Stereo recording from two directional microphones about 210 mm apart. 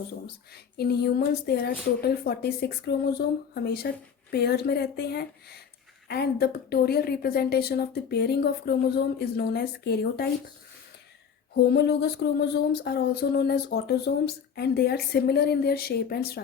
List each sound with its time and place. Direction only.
0.5 s speech: 50° left (ahead or behind)
11.7 s speech: 50° left (ahead or behind)